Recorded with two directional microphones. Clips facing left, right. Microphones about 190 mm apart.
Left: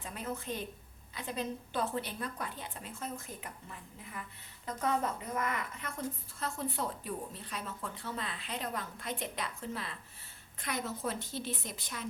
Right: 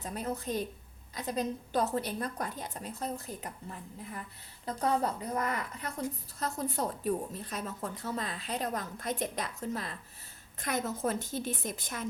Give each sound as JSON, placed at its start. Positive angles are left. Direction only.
{"t": 0.0, "sound": "a woman's voice", "side_deg": -40}